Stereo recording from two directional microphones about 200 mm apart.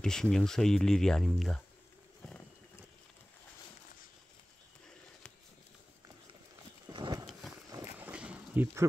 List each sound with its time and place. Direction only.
0.0 s speech: 5° left (ahead or behind)
6.9 s horse: 20° right (ahead or behind)
7.7 s a sound: 10° right (ahead or behind)